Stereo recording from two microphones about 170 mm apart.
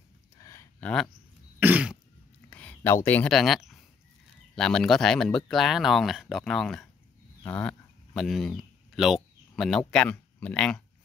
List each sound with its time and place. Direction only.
0.4 s a sound: 20° left (ahead or behind)
0.7 s speech: 10° left (ahead or behind)
1.6 s throat clearing: 10° right (ahead or behind)
2.5 s speech: 10° left (ahead or behind)